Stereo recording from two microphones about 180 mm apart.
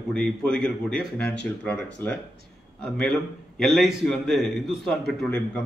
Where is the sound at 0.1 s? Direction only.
5° left (ahead or behind).